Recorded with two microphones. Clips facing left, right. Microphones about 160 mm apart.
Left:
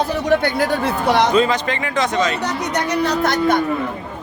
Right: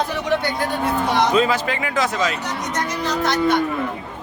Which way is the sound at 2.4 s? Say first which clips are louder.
Left 4 dB; 65° left (ahead or behind).